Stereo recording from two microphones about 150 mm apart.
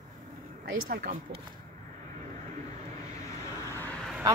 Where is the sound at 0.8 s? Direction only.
80° right.